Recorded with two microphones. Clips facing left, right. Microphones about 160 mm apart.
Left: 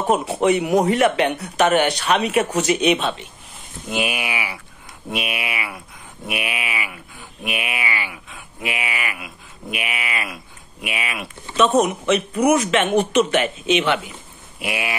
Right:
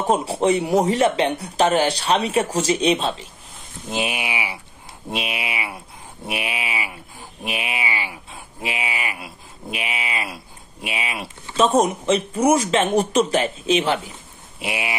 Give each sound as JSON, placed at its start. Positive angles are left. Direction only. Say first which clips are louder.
{"t": 0.1, "sound": "speech", "louder": "left 1 dB", "side_deg": -30}
{"t": 14.6, "sound": "speech", "louder": "left 1 dB", "side_deg": -25}